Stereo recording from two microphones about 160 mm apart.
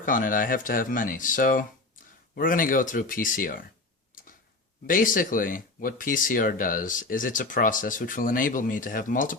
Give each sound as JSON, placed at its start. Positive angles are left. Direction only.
{"t": 0.0, "sound": "speech", "side_deg": 55}
{"t": 4.1, "sound": "a sound", "side_deg": 55}
{"t": 4.9, "sound": "speech", "side_deg": 60}